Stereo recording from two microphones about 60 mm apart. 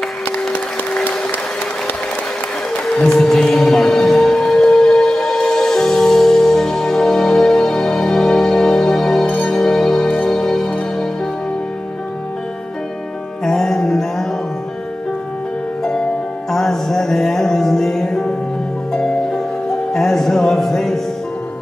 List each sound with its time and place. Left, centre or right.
3.0 s music: centre
9.2 s music: left
9.5 s music: centre
13.4 s music: centre
15.8 s music: centre